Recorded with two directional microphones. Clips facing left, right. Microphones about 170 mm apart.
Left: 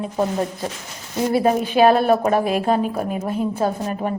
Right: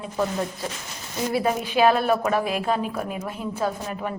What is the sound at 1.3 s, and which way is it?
A woman's voice, 40° left (ahead or behind).